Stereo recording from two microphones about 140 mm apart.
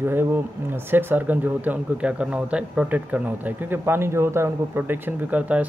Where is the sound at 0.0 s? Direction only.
15° right (ahead or behind).